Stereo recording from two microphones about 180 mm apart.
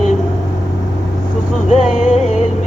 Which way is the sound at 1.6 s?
40° left (ahead or behind).